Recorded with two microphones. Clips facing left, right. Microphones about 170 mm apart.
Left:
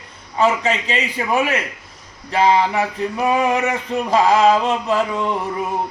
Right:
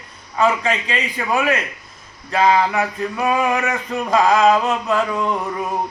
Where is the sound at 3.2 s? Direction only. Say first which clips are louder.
Left 1 dB; 25° left (ahead or behind).